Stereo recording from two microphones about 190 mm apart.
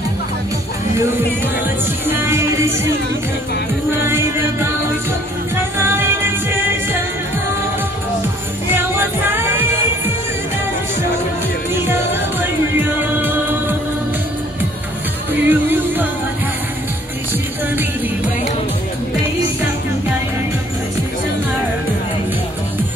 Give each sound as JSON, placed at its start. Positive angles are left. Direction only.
{"t": 2.0, "sound": "music", "side_deg": -10}
{"t": 4.1, "sound": "music", "side_deg": -15}
{"t": 5.8, "sound": "music", "side_deg": -10}
{"t": 8.9, "sound": "music", "side_deg": -10}
{"t": 11.7, "sound": "music", "side_deg": -10}
{"t": 15.4, "sound": "music", "side_deg": -10}